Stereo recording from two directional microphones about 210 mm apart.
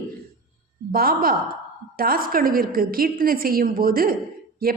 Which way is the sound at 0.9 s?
45° right (ahead or behind).